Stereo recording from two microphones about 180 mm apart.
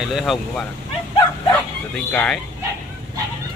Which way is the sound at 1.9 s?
5° left (ahead or behind).